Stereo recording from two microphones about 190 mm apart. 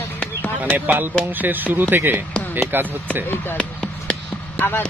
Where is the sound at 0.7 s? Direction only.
10° right (ahead or behind).